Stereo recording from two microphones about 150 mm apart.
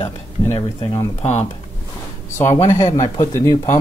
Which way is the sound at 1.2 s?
50° left (ahead or behind).